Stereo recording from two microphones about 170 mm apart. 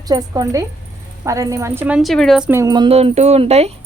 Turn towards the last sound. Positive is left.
turn(degrees=-35)  # may be behind; listen again after turning